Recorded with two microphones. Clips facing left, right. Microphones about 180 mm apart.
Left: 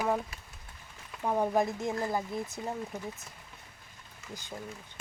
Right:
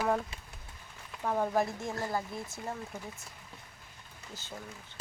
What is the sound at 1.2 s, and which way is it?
Speech, 15° left (ahead or behind).